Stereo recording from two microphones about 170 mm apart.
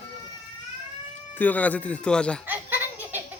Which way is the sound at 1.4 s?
10° left (ahead or behind).